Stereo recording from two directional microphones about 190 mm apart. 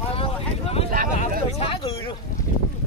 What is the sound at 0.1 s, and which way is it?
Vehicle, 30° left (ahead or behind).